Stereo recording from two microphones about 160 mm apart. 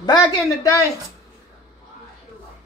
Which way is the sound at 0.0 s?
25° left (ahead or behind).